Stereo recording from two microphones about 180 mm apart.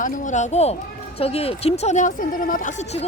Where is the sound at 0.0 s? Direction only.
45° left (ahead or behind).